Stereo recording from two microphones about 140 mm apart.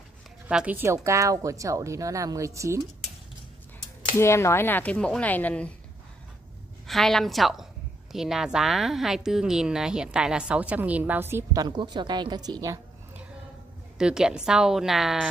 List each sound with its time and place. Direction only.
0.5 s a woman's voice: 10° right (ahead or behind)
4.2 s speech: 20° left (ahead or behind)
6.9 s a woman's voice: centre (ahead or behind); by 11.6 s 15° right (ahead or behind)
11.6 s a woman's voice: 30° right (ahead or behind)
13.9 s a woman's voice: 5° right (ahead or behind)